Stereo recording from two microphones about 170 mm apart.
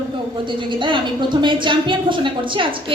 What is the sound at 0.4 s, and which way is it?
A woman's voice, 30° right (ahead or behind).